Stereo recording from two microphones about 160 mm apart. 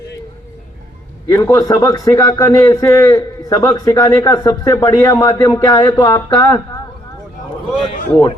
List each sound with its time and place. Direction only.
1.3 s a man's voice: 20° left (ahead or behind)